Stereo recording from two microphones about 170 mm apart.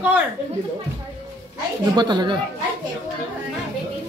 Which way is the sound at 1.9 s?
25° right (ahead or behind).